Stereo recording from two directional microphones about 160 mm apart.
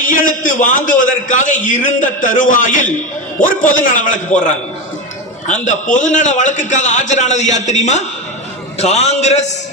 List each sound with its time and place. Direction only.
0.0 s a man's voice: 55° left (ahead or behind)
5.6 s a man's voice: 50° left (ahead or behind)